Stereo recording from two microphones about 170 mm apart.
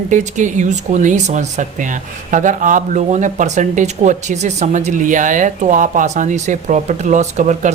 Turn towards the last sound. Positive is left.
turn(degrees=-45)  # may be behind; listen again after turning